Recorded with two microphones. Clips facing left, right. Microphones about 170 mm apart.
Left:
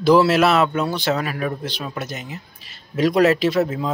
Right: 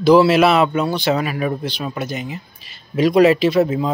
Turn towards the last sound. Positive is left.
turn(degrees=0)  # may be behind; listen again after turning